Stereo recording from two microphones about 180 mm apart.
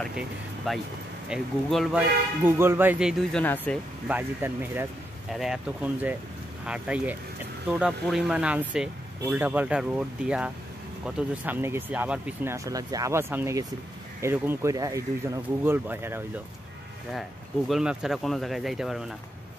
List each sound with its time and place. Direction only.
0.7 s speech: centre (ahead or behind)
4.1 s speech: 10° right (ahead or behind)
17.6 s speech: centre (ahead or behind)